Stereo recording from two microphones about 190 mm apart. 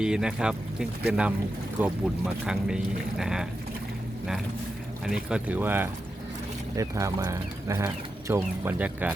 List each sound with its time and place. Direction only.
0.0 s speech: 5° right (ahead or behind)
5.0 s speech: 5° right (ahead or behind)